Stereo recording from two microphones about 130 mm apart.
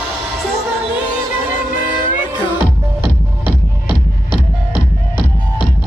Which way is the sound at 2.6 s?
15° right (ahead or behind).